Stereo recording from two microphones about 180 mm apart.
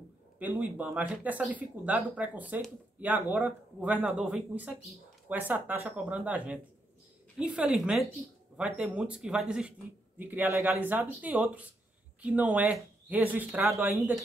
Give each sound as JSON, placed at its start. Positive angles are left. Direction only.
{"t": 0.4, "sound": "a woman's voice", "side_deg": -10}